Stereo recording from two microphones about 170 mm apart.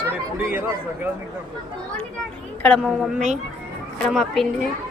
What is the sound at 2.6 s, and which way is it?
Speech, 5° left (ahead or behind).